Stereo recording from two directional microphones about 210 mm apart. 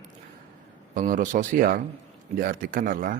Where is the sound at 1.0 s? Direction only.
40° right (ahead or behind).